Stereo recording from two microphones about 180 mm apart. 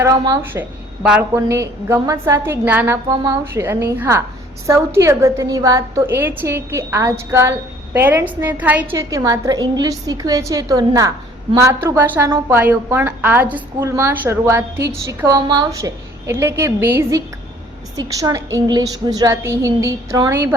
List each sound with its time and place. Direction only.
0.0 s a woman's voice: 15° right (ahead or behind)
1.0 s a woman's voice: 5° right (ahead or behind)
1.5 s a woman's voice: 15° right (ahead or behind)